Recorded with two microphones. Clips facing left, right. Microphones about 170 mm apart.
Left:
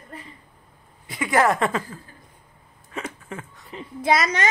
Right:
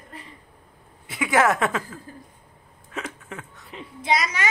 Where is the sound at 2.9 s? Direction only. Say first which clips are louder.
Left 1 dB; centre (ahead or behind).